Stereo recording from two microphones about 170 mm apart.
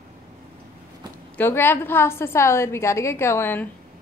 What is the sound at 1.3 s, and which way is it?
A woman's voice, 15° left (ahead or behind).